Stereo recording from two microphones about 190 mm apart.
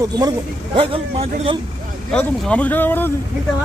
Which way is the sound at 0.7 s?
30° right (ahead or behind).